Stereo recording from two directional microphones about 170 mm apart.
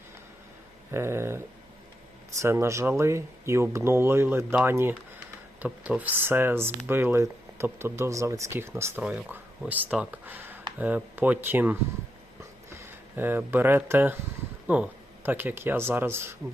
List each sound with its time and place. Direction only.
0.9 s speech: 15° right (ahead or behind)
12.8 s speech: 10° right (ahead or behind)